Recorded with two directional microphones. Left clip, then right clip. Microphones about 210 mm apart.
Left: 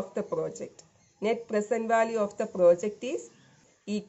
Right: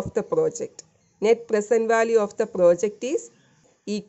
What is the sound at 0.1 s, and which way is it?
Speech, 50° right (ahead or behind).